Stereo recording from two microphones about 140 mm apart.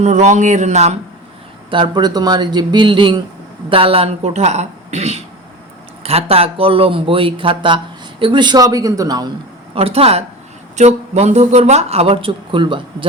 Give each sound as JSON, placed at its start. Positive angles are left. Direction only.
{"t": 0.0, "sound": "speech", "side_deg": -55}
{"t": 1.7, "sound": "speech", "side_deg": -35}
{"t": 9.7, "sound": "speech", "side_deg": -45}